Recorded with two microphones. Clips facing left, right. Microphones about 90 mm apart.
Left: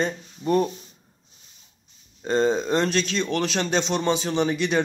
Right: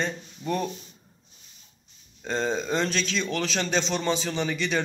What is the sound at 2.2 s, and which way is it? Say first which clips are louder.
A man's voice: left 6 dB; 10° left (ahead or behind).